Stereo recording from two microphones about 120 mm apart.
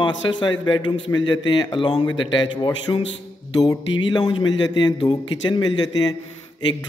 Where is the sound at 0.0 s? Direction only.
40° left (ahead or behind).